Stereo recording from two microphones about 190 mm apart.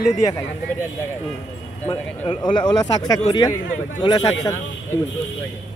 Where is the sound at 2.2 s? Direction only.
25° left (ahead or behind).